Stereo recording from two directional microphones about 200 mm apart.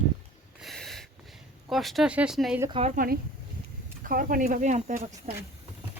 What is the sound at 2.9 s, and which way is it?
Speech, 50° right (ahead or behind).